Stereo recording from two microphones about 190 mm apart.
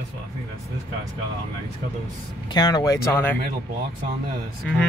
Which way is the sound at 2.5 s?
20° left (ahead or behind).